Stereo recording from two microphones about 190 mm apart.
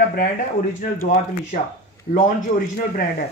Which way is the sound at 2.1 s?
45° left (ahead or behind).